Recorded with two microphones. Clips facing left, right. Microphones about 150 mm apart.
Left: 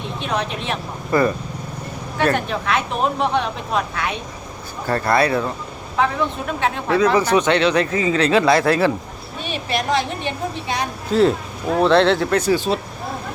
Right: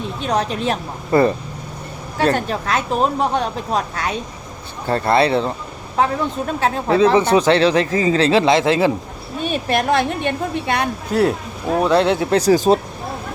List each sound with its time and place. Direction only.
0.2 s speech: 40° right (ahead or behind)
4.9 s speech: 25° right (ahead or behind)
6.6 s speech: 35° right (ahead or behind)
9.4 s a woman's voice: 50° right (ahead or behind)
11.1 s speech: 10° right (ahead or behind)
12.3 s speech: 35° right (ahead or behind)